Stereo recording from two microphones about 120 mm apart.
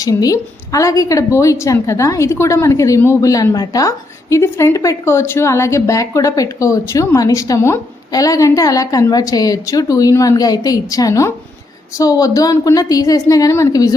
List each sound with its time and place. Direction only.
0.0 s a woman's voice: 30° left (ahead or behind)